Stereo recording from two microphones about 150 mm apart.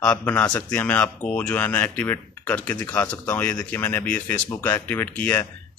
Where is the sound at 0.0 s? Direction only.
10° left (ahead or behind).